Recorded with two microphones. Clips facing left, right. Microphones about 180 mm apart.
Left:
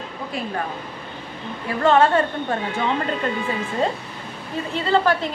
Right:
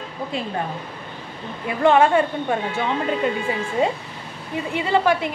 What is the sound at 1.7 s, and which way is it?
Speech, 15° right (ahead or behind).